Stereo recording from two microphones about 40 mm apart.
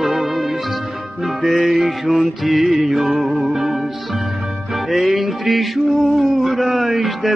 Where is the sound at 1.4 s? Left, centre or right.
Centre.